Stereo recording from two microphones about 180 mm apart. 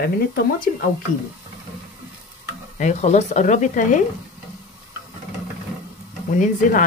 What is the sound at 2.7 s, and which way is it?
Speech, 40° left (ahead or behind).